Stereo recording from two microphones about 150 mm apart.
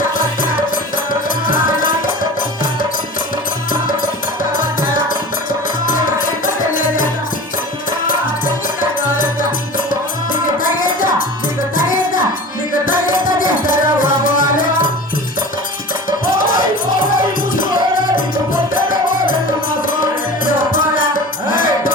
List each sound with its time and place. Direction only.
1.5 s music: 65° left (ahead or behind)
6.4 s music: 65° left (ahead or behind)
8.0 s music: 65° left (ahead or behind)
12.8 s music: 65° left (ahead or behind)
16.0 s music: 65° left (ahead or behind)
18.7 s music: 65° left (ahead or behind)